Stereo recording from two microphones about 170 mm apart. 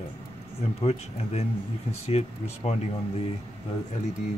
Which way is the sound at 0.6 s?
35° left (ahead or behind).